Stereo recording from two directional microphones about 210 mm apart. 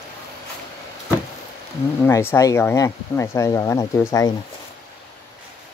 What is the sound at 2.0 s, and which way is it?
Speech, 10° left (ahead or behind).